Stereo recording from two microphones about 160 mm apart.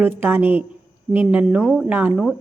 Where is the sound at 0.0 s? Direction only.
15° right (ahead or behind).